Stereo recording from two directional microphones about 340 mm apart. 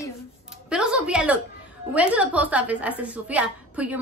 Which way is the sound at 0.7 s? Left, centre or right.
Centre.